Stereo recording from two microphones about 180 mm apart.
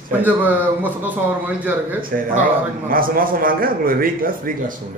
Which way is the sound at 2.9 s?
50° right (ahead or behind).